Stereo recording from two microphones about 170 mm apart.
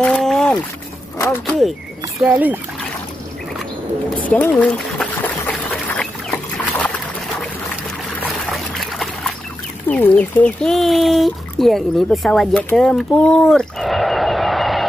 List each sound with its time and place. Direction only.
0.0 s rowboat: 5° left (ahead or behind)
1.1 s speech: 15° left (ahead or behind)
2.2 s speech: 10° right (ahead or behind)
4.3 s duck: 10° left (ahead or behind)
8.2 s boat: centre (ahead or behind)
9.8 s speech: 10° left (ahead or behind)